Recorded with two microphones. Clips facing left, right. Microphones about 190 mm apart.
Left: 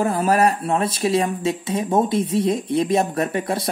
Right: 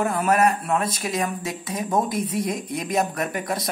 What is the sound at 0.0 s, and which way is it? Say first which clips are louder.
Speech: left 2 dB; 30° left (ahead or behind).